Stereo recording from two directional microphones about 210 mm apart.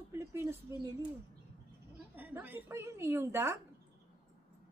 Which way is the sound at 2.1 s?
10° right (ahead or behind).